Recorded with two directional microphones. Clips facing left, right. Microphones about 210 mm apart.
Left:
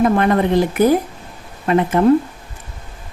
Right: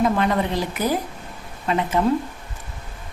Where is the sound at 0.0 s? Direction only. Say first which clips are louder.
Left 5 dB; 55° left (ahead or behind).